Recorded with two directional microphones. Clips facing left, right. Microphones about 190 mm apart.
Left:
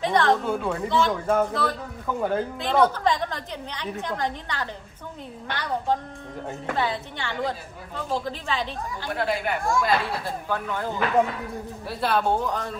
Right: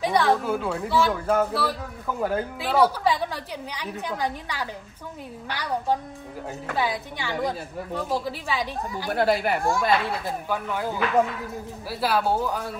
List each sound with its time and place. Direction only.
0.0 s a woman's voice: 10° right (ahead or behind)
9.1 s speech: 40° right (ahead or behind)
10.5 s a woman's voice: 10° right (ahead or behind)